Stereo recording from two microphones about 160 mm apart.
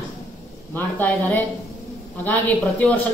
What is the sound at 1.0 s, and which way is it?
Speech, 10° left (ahead or behind).